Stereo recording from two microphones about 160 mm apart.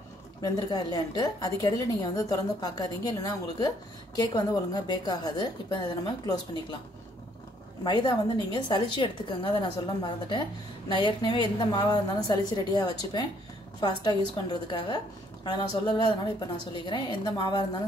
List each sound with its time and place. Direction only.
0.4 s a woman's voice: 25° left (ahead or behind)
7.8 s a woman's voice: 25° left (ahead or behind)